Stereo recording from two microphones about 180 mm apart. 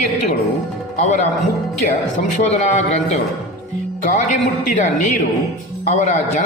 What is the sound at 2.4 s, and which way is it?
Speech, 40° left (ahead or behind).